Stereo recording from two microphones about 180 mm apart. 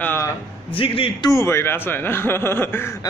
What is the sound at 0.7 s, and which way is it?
Speech, 30° left (ahead or behind).